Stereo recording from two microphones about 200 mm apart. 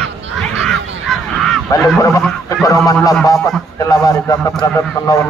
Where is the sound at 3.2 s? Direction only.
15° left (ahead or behind).